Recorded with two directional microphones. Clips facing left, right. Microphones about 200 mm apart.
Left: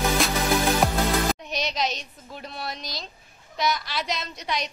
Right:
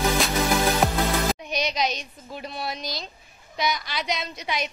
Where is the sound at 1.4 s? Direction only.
Centre (ahead or behind).